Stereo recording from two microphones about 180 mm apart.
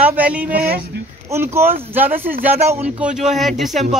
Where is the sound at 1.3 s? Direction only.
15° right (ahead or behind).